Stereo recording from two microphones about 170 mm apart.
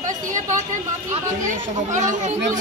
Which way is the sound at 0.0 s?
50° right (ahead or behind).